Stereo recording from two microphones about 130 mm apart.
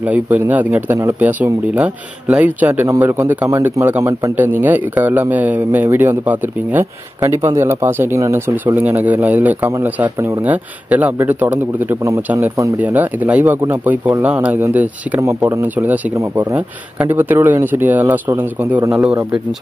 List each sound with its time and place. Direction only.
0.0 s a man's voice: 10° right (ahead or behind)